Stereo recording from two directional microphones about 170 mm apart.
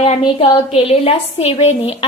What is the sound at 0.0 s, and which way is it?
A woman's voice, 30° left (ahead or behind).